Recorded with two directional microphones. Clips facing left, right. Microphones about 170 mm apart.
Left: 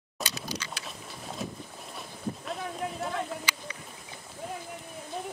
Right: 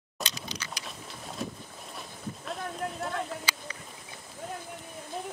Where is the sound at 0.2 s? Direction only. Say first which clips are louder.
Left 1 dB; centre (ahead or behind).